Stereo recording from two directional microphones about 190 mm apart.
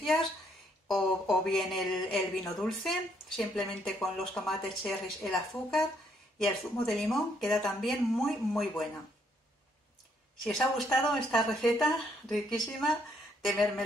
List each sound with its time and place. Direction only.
0.8 s speech: centre (ahead or behind)
10.4 s speech: centre (ahead or behind)